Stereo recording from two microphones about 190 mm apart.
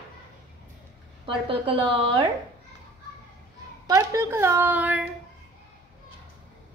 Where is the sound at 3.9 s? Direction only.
15° right (ahead or behind).